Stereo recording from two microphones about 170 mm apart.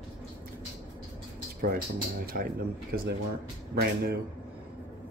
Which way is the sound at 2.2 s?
60° right (ahead or behind).